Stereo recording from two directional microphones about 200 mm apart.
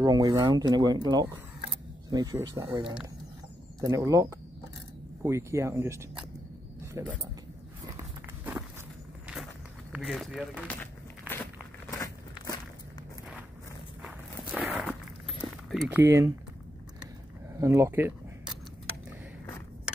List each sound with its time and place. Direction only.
0.0 s speech: 20° right (ahead or behind)
9.9 s speech: centre (ahead or behind)
11.9 s a sound: 15° left (ahead or behind)
14.0 s walk: 5° right (ahead or behind)
15.7 s a sound: centre (ahead or behind)
16.0 s speech: 15° right (ahead or behind)
17.6 s speech: 15° right (ahead or behind)